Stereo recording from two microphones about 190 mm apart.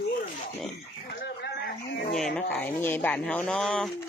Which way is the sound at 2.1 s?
5° left (ahead or behind).